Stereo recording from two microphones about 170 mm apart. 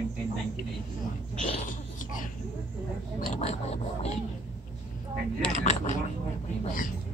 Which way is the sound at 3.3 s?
40° left (ahead or behind).